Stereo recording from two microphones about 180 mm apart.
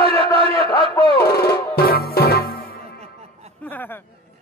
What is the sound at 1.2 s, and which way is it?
Music, 60° left (ahead or behind).